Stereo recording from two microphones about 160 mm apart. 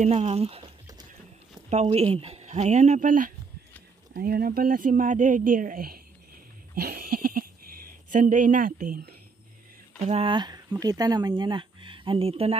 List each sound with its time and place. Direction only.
0.0 s speech: 45° right (ahead or behind)
1.7 s speech: 40° right (ahead or behind)
4.1 s speech: 70° right (ahead or behind)
6.7 s a sound: 75° right (ahead or behind)
8.1 s speech: 55° right (ahead or behind)
10.0 s speech: 35° right (ahead or behind)